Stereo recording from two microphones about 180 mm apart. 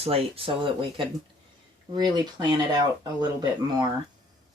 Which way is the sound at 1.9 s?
25° right (ahead or behind).